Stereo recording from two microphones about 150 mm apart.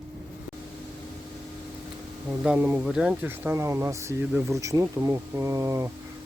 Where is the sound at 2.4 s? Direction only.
10° right (ahead or behind).